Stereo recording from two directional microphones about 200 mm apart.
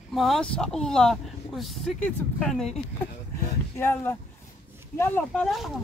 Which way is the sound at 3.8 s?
10° left (ahead or behind).